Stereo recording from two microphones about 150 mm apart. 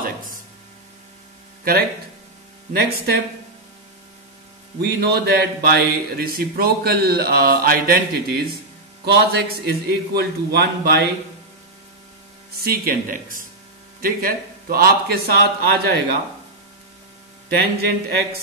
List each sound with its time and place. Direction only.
0.0 s a sound: 65° right (ahead or behind)
1.6 s speech: 80° right
2.7 s speech: 90° right
4.8 s speech: 90° right
12.5 s speech: 85° right; by 13.5 s 65° right (ahead or behind)
14.0 s speech: 85° right